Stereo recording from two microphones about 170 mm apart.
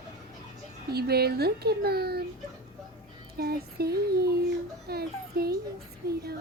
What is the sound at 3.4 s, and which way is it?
Speech, 65° right (ahead or behind).